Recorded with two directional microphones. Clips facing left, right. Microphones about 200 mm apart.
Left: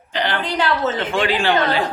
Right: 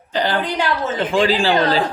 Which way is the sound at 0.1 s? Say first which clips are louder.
Right 3 dB; 35° right (ahead or behind).